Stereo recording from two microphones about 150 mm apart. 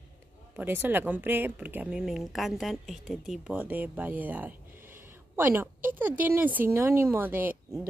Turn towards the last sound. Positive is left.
turn(degrees=-10)  # may be behind; listen again after turning